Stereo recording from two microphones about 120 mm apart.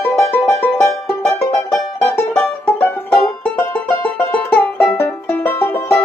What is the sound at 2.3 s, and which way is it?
Music, 15° left (ahead or behind).